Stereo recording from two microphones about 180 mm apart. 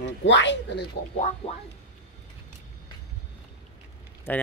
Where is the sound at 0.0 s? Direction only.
80° left.